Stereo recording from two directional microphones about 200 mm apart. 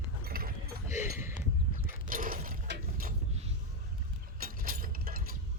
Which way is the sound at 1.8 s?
45° right (ahead or behind).